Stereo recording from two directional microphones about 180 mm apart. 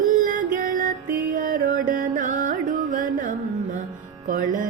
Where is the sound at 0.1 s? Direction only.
45° right (ahead or behind).